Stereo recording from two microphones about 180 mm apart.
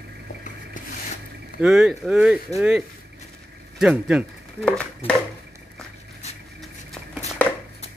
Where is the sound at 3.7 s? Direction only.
5° right (ahead or behind).